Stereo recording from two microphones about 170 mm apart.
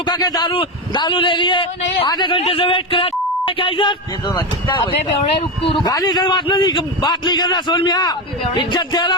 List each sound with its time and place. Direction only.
0.0 s a man's voice: 25° left (ahead or behind)
5.4 s a man's voice: 30° left (ahead or behind)